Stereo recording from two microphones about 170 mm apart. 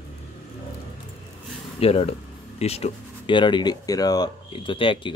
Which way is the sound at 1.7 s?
35° left (ahead or behind).